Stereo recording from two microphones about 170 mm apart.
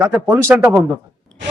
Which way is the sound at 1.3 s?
5° left (ahead or behind).